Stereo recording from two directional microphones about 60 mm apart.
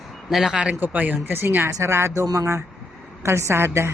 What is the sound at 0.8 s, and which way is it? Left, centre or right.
Speech, right.